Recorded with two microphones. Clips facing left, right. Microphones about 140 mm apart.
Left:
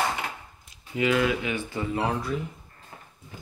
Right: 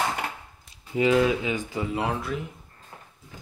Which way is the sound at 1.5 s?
10° right (ahead or behind).